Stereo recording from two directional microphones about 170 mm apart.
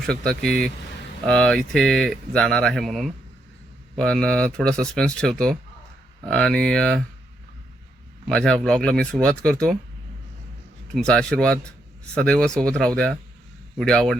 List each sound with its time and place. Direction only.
0.3 s speech: 5° left (ahead or behind)
8.3 s speech: 5° left (ahead or behind)
10.9 s speech: 5° left (ahead or behind)